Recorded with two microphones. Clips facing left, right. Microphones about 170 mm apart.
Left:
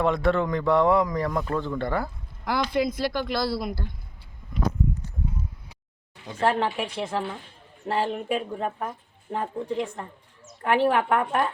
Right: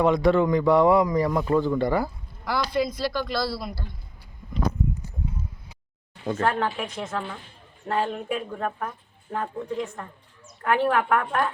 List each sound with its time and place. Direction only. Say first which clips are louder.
0.0 s speech: right 3 dB; centre (ahead or behind)
2.4 s speech: left 1 dB; 20° left (ahead or behind)
6.4 s a woman's voice: left 3 dB; 25° left (ahead or behind)